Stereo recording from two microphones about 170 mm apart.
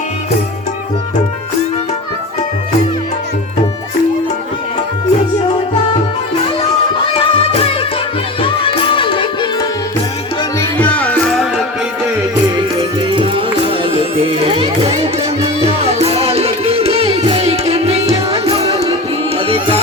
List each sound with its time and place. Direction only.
7.2 s music: 35° left (ahead or behind)
10.6 s music: 10° left (ahead or behind)
13.1 s music: 30° right (ahead or behind)